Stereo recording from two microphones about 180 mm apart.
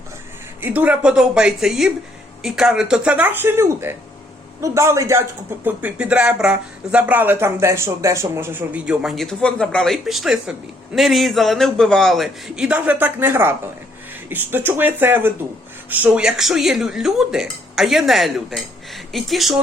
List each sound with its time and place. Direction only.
0.6 s speech: 10° right (ahead or behind)